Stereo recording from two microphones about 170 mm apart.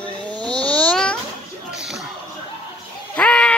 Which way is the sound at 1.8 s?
Centre (ahead or behind).